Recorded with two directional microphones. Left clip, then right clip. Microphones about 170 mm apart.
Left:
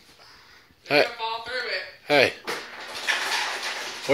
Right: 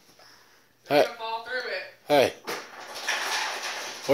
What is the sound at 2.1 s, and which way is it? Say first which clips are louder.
Speech: left 2 dB; 15° right (ahead or behind).